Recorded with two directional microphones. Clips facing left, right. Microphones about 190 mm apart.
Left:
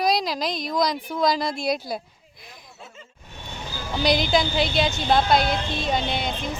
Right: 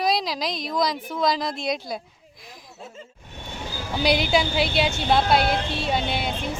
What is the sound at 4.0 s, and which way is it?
A woman's voice, 10° right (ahead or behind).